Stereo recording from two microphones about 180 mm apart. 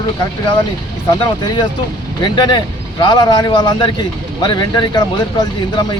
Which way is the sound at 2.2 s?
25° left (ahead or behind).